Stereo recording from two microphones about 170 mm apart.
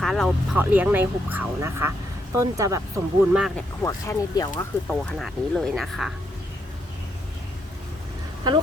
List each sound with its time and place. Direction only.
0.0 s speech: centre (ahead or behind)
0.5 s speech: 10° right (ahead or behind)
3.2 s speech: 5° right (ahead or behind)
3.8 s speech: 20° left (ahead or behind); by 6.1 s centre (ahead or behind)
8.4 s speech: 25° right (ahead or behind)